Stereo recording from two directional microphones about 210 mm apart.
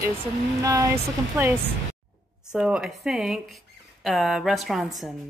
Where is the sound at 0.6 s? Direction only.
15° right (ahead or behind).